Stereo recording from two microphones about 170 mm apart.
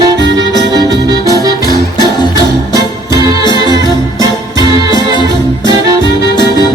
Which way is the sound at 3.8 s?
20° right (ahead or behind).